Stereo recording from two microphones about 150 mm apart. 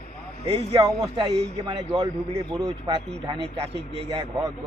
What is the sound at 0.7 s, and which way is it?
A man's voice, 25° right (ahead or behind).